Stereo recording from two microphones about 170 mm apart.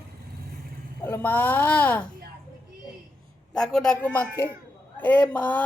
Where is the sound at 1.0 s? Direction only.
10° left (ahead or behind).